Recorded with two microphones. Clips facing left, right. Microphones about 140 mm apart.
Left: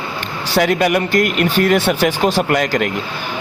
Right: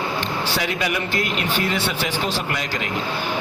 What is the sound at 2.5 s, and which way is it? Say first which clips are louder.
Speech: left 10 dB; 60° left (ahead or behind).